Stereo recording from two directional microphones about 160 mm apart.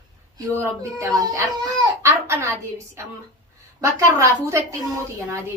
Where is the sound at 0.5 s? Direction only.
20° right (ahead or behind).